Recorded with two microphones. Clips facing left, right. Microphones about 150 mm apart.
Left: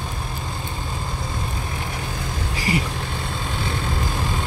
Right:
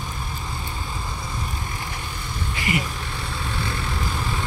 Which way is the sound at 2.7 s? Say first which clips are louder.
Left 2 dB; 35° left (ahead or behind).